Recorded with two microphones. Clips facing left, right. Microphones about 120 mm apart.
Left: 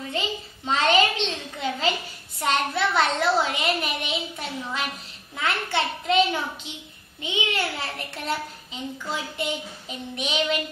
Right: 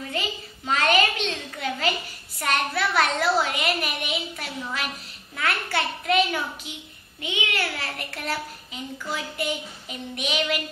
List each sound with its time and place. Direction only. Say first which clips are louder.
0.1 s a sound: left 3 dB; 25° left (ahead or behind)
2.4 s a child's voice: left 1 dB; 25° left (ahead or behind)
7.2 s child singing: left 1 dB; 30° left (ahead or behind)
8.9 s child singing: right 1 dB; 25° left (ahead or behind)